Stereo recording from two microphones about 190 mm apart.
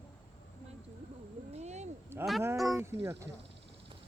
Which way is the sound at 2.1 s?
10° right (ahead or behind).